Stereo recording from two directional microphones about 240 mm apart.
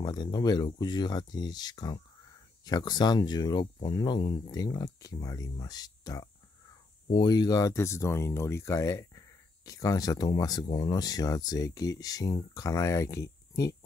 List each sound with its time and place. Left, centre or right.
0.0 s speech: centre